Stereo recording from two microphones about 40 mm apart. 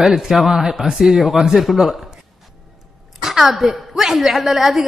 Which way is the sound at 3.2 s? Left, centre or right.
Centre.